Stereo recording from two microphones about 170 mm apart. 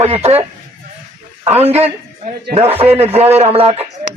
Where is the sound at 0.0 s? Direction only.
35° right (ahead or behind).